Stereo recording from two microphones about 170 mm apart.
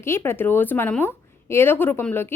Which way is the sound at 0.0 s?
15° left (ahead or behind).